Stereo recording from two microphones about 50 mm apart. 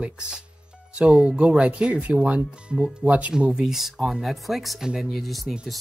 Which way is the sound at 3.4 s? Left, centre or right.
Centre.